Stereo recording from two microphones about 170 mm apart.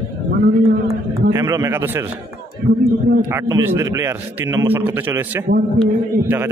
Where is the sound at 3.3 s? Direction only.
15° right (ahead or behind).